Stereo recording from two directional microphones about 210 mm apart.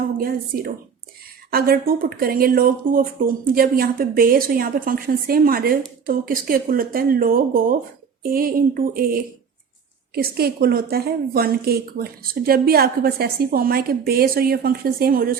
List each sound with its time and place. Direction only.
0.2 s a woman's voice: 45° right (ahead or behind)